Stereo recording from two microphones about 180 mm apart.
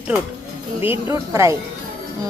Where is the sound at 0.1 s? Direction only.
5° right (ahead or behind).